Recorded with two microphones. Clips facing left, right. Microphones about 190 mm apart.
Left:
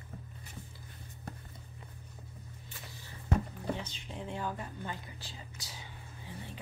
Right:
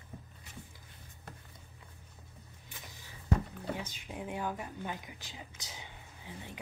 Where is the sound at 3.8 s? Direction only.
10° right (ahead or behind).